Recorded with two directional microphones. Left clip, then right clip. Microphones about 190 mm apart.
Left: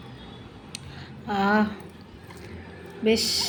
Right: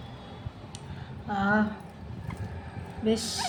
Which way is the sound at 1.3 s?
20° left (ahead or behind).